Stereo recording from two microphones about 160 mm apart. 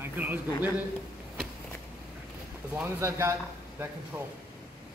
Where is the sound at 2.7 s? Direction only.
15° right (ahead or behind).